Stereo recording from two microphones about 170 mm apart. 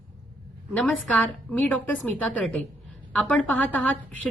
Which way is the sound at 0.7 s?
10° left (ahead or behind).